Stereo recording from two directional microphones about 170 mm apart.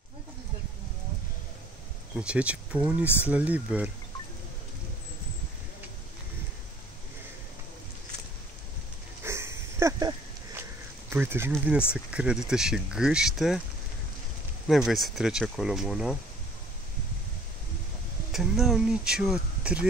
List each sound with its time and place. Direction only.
2.1 s speech: 5° right (ahead or behind)
9.2 s dog: 15° right (ahead or behind)
11.1 s speech: 15° right (ahead or behind)
14.7 s speech: centre (ahead or behind)
18.3 s speech: centre (ahead or behind)